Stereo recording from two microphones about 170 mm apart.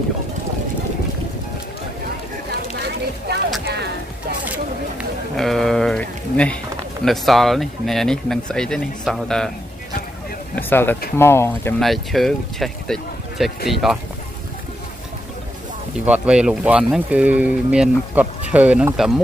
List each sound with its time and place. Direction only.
3.6 s music: 80° right
5.3 s a sound: centre (ahead or behind)
7.1 s speech: centre (ahead or behind)
10.5 s speech: 10° left (ahead or behind)
11.8 s speech: centre (ahead or behind)
16.1 s speech: 5° right (ahead or behind)